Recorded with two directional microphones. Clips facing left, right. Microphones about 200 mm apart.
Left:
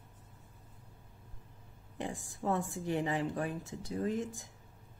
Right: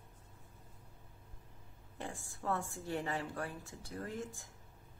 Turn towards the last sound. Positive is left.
turn(degrees=20)  # may be behind; listen again after turning